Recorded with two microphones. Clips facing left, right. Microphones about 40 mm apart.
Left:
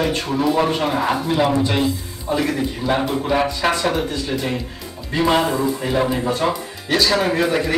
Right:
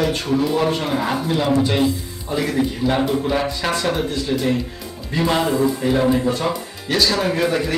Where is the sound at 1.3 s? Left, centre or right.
Centre.